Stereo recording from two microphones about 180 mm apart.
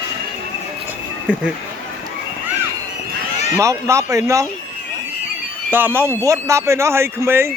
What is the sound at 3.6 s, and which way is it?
Speech, 15° right (ahead or behind).